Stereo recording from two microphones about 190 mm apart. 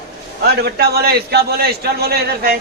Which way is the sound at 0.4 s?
60° right (ahead or behind).